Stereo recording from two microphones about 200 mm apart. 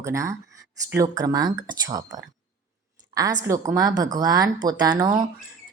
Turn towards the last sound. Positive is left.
turn(degrees=-20)  # may be behind; listen again after turning